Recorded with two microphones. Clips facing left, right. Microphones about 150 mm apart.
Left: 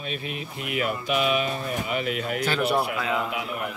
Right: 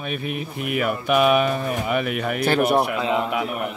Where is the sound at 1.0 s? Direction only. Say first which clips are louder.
Right 8 dB; 55° right (ahead or behind).